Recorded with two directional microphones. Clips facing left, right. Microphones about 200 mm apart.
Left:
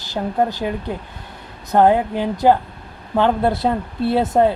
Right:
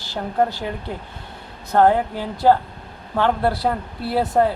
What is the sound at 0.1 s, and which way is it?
Speech, 20° left (ahead or behind).